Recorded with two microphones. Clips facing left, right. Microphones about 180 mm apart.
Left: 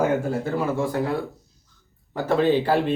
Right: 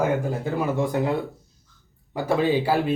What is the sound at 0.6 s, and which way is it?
A man's voice, 20° right (ahead or behind).